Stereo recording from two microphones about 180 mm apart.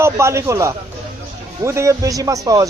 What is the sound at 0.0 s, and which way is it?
A man's voice, 15° right (ahead or behind).